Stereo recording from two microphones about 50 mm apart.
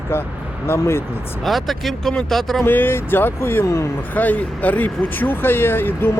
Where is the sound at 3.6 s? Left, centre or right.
Left.